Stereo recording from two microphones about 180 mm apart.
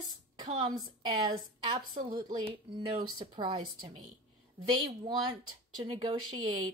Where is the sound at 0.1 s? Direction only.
25° right (ahead or behind).